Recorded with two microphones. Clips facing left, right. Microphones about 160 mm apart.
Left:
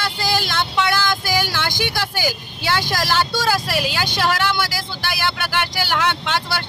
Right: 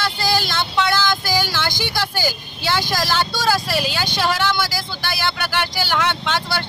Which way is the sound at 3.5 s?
10° left (ahead or behind).